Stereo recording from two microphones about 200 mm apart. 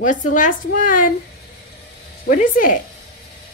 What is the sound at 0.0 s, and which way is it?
A woman's voice, 40° left (ahead or behind).